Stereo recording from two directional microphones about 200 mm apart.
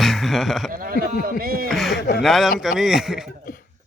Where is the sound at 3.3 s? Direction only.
50° left (ahead or behind).